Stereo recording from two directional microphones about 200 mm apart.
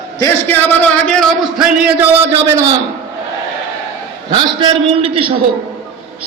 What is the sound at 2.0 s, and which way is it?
Speech, 10° right (ahead or behind).